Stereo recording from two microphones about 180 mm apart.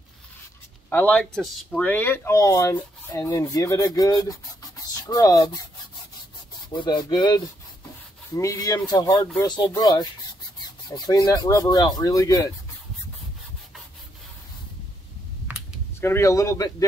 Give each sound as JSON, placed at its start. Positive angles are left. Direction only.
{"t": 0.8, "sound": "speech", "side_deg": 10}
{"t": 6.7, "sound": "speech", "side_deg": 25}
{"t": 11.1, "sound": "speech", "side_deg": 20}
{"t": 16.0, "sound": "speech", "side_deg": 15}